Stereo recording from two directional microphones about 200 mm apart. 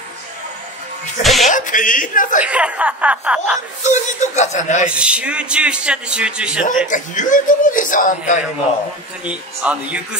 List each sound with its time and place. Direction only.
1.4 s speech: 40° left (ahead or behind)
2.4 s speech: 5° right (ahead or behind)
3.8 s speech: 35° left (ahead or behind)
4.8 s a man's voice: 5° right (ahead or behind)
6.9 s speech: 40° left (ahead or behind)
9.2 s speech: 5° right (ahead or behind)